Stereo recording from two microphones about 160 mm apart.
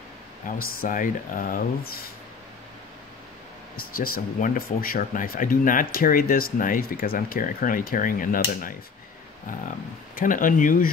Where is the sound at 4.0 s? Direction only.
60° left (ahead or behind).